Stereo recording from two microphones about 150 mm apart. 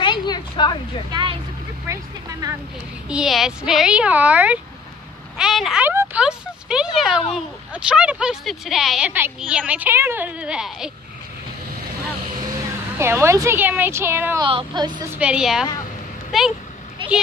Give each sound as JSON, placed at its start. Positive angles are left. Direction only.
{"t": 0.0, "sound": "a sound", "side_deg": 30}
{"t": 1.1, "sound": "speech", "side_deg": -35}
{"t": 1.9, "sound": "a woman's voice", "side_deg": -20}
{"t": 3.1, "sound": "a woman's voice", "side_deg": -5}
{"t": 12.9, "sound": "a woman's voice", "side_deg": -15}
{"t": 14.4, "sound": "a woman's voice", "side_deg": -35}
{"t": 15.0, "sound": "a woman's voice", "side_deg": -10}